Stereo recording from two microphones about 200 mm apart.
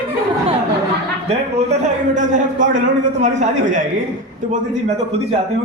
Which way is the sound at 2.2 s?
40° right (ahead or behind).